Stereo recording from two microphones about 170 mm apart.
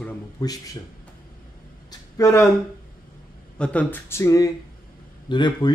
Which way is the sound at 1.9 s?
20° left (ahead or behind).